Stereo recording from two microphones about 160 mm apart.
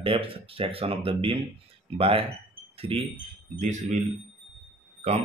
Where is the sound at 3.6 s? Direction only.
50° right (ahead or behind).